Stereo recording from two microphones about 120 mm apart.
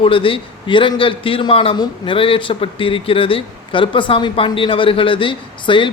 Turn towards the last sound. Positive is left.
turn(degrees=45)  # may be behind; listen again after turning